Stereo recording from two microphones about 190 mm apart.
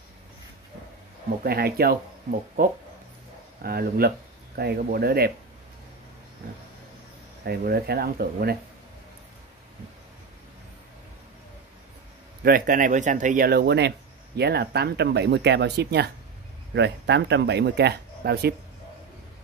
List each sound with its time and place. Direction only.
1.4 s speech: 55° right (ahead or behind)
7.4 s speech: 55° right (ahead or behind)
12.4 s speech: 50° right (ahead or behind)